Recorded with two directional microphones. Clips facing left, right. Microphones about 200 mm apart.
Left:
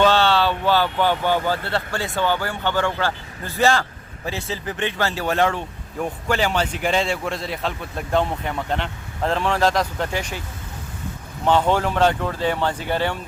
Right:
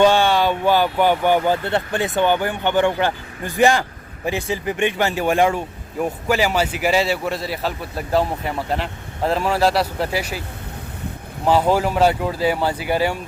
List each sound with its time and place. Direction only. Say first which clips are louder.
0.0 s speech: right 2 dB; 15° right (ahead or behind)
11.4 s speech: right 2 dB; 5° right (ahead or behind)